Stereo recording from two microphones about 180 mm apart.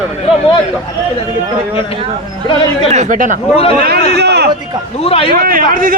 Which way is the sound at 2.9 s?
40° right (ahead or behind).